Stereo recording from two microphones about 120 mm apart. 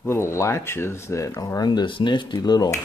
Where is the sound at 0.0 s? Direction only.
20° left (ahead or behind).